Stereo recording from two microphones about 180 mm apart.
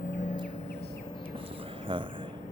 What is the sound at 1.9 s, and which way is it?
Speech, 30° right (ahead or behind).